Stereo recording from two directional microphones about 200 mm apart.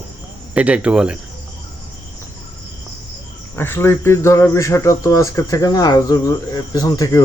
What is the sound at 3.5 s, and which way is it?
Speech, 10° left (ahead or behind).